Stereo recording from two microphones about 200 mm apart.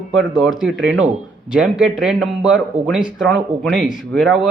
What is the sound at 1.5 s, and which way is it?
Speech, 5° right (ahead or behind).